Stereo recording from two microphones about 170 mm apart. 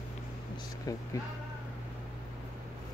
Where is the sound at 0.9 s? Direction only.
20° left (ahead or behind).